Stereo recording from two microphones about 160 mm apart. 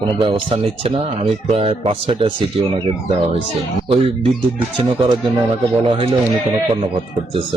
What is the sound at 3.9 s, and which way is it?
Speech, 40° right (ahead or behind).